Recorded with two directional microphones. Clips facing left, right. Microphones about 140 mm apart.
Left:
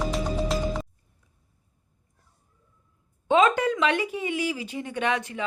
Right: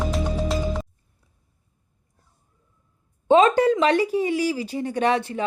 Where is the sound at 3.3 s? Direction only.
35° right (ahead or behind).